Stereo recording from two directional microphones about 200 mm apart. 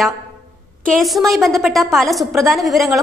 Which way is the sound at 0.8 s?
Centre (ahead or behind).